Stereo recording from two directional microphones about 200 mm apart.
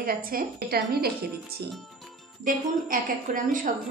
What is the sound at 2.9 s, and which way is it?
Speech, 40° right (ahead or behind).